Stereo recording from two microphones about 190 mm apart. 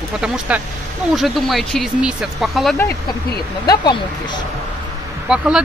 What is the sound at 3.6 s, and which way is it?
Speech, 20° left (ahead or behind).